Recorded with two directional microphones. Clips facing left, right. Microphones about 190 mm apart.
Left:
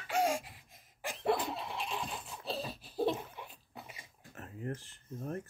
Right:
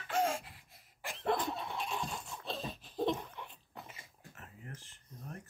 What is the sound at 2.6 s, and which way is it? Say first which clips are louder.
Dog: left 1 dB; 5° left (ahead or behind).